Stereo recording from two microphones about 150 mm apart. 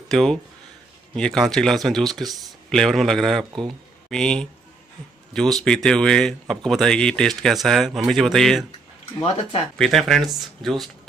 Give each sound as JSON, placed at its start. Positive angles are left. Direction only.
{"t": 0.1, "sound": "speech", "side_deg": 0}
{"t": 9.8, "sound": "speech", "side_deg": 0}